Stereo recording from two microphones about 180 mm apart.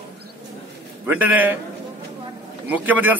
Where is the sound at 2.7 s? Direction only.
10° right (ahead or behind).